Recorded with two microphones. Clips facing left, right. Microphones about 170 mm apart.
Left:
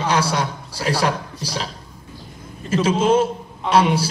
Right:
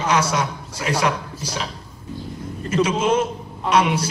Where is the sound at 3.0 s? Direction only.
30° left (ahead or behind).